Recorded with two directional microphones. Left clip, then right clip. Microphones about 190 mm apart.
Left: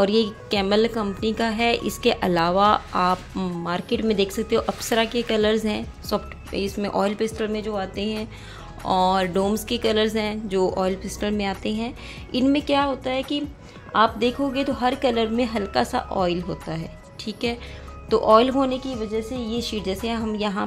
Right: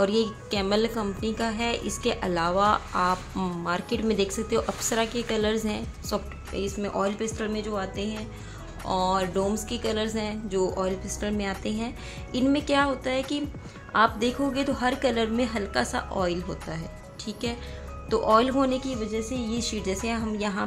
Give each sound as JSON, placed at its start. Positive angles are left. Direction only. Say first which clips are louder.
{"t": 0.0, "sound": "a woman's voice", "louder": "left 4 dB", "side_deg": 25}
{"t": 8.8, "sound": "music", "louder": "left 5 dB", "side_deg": 35}
{"t": 9.7, "sound": "a woman's voice", "louder": "left 7 dB", "side_deg": 35}